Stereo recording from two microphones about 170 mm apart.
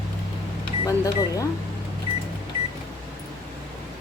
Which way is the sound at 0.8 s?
20° left (ahead or behind).